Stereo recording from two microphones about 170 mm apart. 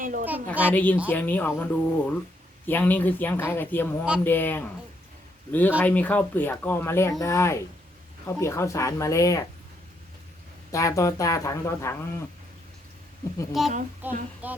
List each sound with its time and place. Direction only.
0.0 s a woman's voice: 50° right (ahead or behind)
0.7 s speech: 10° left (ahead or behind)
10.7 s speech: 20° left (ahead or behind)
13.6 s speech: centre (ahead or behind)